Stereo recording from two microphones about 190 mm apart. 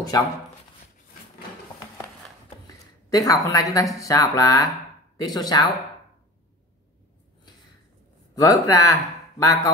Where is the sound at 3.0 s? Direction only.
20° left (ahead or behind).